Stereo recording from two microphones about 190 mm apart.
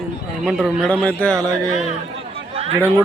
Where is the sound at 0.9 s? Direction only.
5° left (ahead or behind).